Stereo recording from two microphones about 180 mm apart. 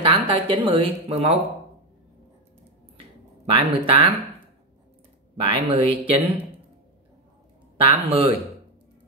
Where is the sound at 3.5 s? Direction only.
30° right (ahead or behind).